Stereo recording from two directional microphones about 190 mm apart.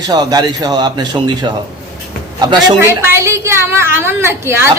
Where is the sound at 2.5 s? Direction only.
20° right (ahead or behind).